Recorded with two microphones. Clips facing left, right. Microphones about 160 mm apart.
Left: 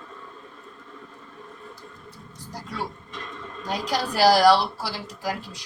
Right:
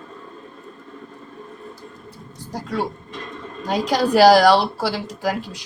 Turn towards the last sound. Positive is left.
turn(degrees=-80)